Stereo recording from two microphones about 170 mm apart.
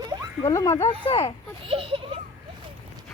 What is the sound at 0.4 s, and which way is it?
Speech, 20° left (ahead or behind).